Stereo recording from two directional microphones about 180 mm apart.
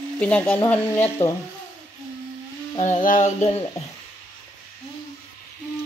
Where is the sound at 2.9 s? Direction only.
45° left (ahead or behind).